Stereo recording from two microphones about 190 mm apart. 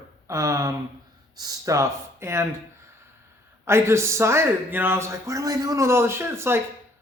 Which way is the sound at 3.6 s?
15° right (ahead or behind).